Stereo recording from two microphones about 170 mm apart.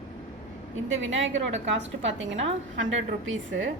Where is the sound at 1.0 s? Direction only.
90° right.